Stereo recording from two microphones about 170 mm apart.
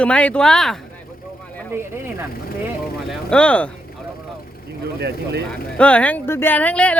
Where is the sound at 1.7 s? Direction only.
15° right (ahead or behind).